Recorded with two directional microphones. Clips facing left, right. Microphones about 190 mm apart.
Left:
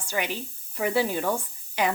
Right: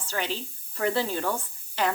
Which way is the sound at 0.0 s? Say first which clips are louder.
Left 1 dB; 15° left (ahead or behind).